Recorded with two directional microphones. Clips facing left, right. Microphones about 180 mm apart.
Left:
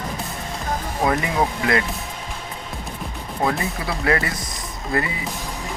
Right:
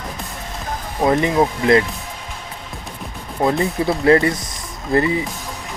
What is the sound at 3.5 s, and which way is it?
Speech, 25° right (ahead or behind).